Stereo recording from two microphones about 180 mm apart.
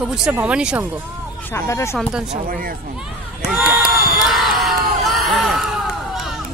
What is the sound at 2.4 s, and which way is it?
Speech, 55° right (ahead or behind).